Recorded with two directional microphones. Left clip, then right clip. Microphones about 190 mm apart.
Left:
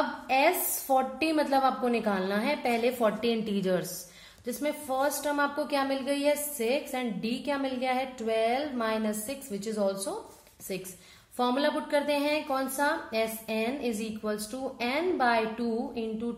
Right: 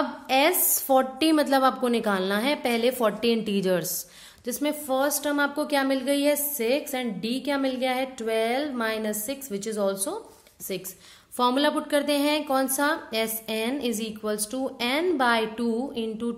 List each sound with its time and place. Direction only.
0.3 s a woman's voice: 45° right (ahead or behind)